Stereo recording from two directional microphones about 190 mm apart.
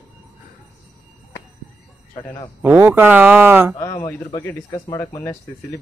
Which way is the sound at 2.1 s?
25° left (ahead or behind).